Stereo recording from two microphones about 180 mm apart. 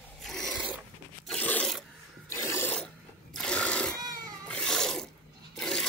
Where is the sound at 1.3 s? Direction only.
10° left (ahead or behind).